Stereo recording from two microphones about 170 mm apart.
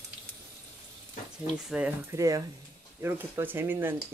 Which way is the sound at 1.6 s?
10° right (ahead or behind).